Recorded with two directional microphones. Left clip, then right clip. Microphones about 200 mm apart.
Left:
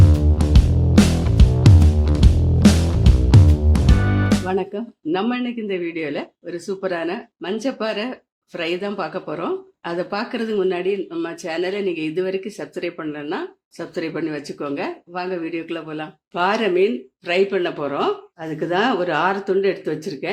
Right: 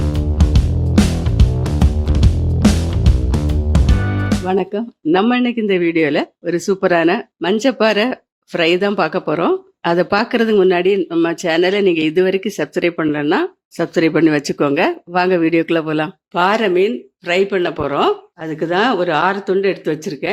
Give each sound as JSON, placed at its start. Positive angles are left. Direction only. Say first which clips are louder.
{"t": 0.0, "sound": "music", "louder": "even", "side_deg": 0}
{"t": 4.4, "sound": "speech", "louder": "right 5 dB", "side_deg": -30}
{"t": 16.4, "sound": "speech", "louder": "right 4 dB", "side_deg": -20}